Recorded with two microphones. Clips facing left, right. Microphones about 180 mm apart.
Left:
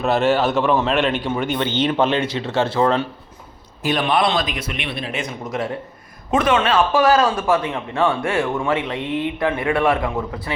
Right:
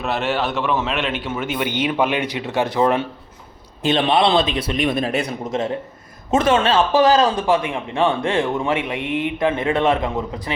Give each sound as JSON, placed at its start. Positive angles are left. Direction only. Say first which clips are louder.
{"t": 0.0, "sound": "a man's voice", "louder": "left 5 dB", "side_deg": 0}
{"t": 4.9, "sound": "speech", "louder": "right 6 dB", "side_deg": -45}
{"t": 5.5, "sound": "a man's voice", "louder": "right 2 dB", "side_deg": -25}